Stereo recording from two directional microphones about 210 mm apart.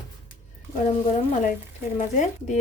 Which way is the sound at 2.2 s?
35° left (ahead or behind).